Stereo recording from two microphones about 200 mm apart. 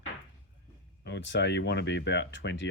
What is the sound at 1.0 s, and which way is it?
Speech, 60° left (ahead or behind).